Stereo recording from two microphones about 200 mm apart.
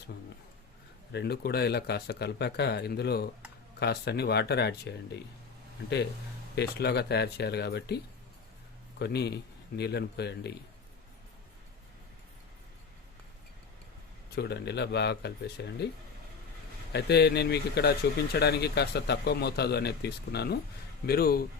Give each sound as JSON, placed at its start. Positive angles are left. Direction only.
{"t": 1.1, "sound": "a man's voice", "side_deg": 55}
{"t": 6.6, "sound": "a man's voice", "side_deg": 55}
{"t": 14.3, "sound": "a man's voice", "side_deg": 55}
{"t": 16.9, "sound": "a man's voice", "side_deg": 55}